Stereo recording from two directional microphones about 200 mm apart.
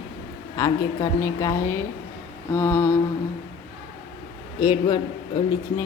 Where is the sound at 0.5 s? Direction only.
15° left (ahead or behind).